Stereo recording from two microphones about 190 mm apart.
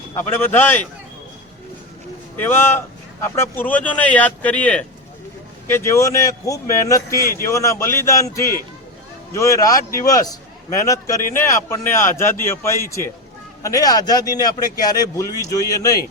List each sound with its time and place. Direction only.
0.3 s speech: 10° left (ahead or behind)
2.3 s speech: 10° left (ahead or behind)
7.2 s a man's voice: 50° left (ahead or behind)
7.4 s a man's voice: 15° left (ahead or behind)